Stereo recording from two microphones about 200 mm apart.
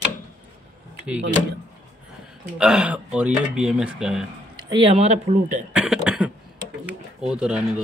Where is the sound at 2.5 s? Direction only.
5° right (ahead or behind).